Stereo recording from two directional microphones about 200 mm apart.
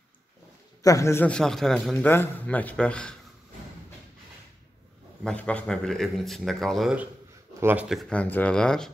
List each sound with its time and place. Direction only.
0.8 s a man's voice: 15° left (ahead or behind)
5.2 s speech: 5° left (ahead or behind)